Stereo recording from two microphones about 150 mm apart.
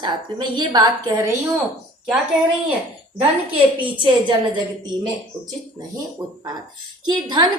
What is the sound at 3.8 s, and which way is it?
Speech, 35° right (ahead or behind).